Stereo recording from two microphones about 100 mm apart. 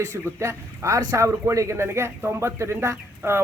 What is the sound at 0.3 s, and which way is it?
A man's voice, 30° right (ahead or behind).